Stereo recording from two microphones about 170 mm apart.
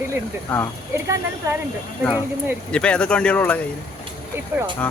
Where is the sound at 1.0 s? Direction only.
20° right (ahead or behind).